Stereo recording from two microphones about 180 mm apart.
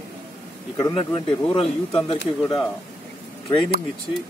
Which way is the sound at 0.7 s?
25° left (ahead or behind).